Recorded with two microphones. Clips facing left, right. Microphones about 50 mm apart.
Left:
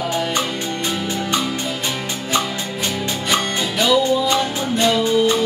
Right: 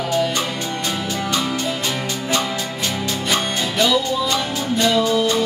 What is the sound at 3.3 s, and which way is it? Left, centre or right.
Music, centre.